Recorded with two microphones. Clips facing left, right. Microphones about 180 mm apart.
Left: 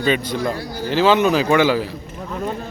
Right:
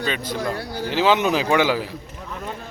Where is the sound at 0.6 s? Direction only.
60° right (ahead or behind).